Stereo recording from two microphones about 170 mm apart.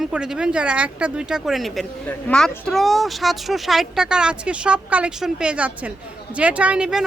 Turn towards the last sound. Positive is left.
turn(degrees=-5)  # may be behind; listen again after turning